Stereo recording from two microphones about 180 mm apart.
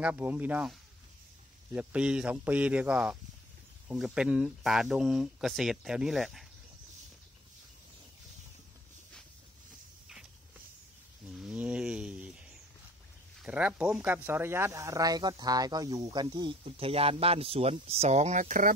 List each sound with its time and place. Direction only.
0.0 s speech: 10° right (ahead or behind)
11.3 s a sound: 5° right (ahead or behind)
13.4 s speech: 5° right (ahead or behind); by 18.7 s 45° right (ahead or behind)